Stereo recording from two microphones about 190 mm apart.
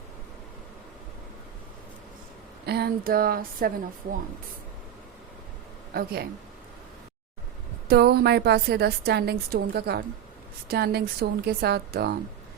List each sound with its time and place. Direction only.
2.6 s a sound: 60° right (ahead or behind)
5.9 s speech: 55° right (ahead or behind)
7.9 s a woman's voice: 55° right (ahead or behind)